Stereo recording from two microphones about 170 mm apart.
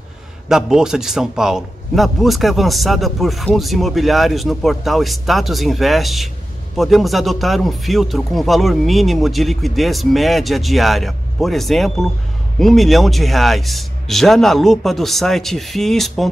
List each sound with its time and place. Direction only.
0.5 s a man's voice: 5° right (ahead or behind)